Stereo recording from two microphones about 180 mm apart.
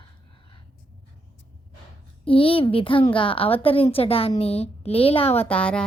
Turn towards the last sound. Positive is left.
turn(degrees=5)  # may be behind; listen again after turning